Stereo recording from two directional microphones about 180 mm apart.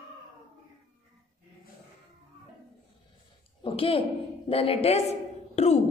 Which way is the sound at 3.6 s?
30° left (ahead or behind).